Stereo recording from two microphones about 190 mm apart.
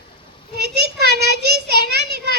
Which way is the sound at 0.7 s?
60° right (ahead or behind).